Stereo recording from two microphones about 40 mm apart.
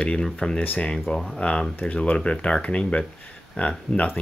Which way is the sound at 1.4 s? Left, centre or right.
Left.